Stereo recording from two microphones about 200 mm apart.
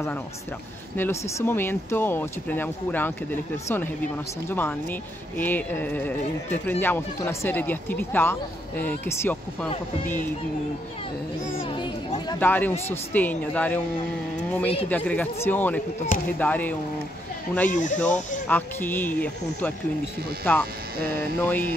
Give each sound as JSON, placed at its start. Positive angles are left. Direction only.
{"t": 0.9, "sound": "speech", "side_deg": 10}
{"t": 11.8, "sound": "chatter", "side_deg": 25}
{"t": 12.4, "sound": "speech", "side_deg": 10}
{"t": 14.9, "sound": "speech", "side_deg": 10}
{"t": 17.6, "sound": "speech", "side_deg": 40}
{"t": 17.9, "sound": "speech", "side_deg": 10}